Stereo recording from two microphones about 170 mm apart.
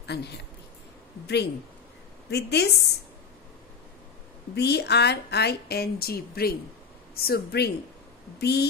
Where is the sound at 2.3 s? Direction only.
75° left (ahead or behind).